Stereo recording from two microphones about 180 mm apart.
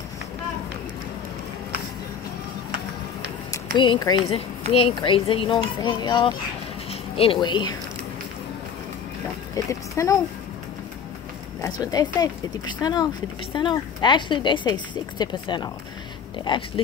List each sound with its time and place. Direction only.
3.7 s a woman's voice: 25° left (ahead or behind)
9.7 s speech: 20° left (ahead or behind)
11.9 s speech: 20° left (ahead or behind)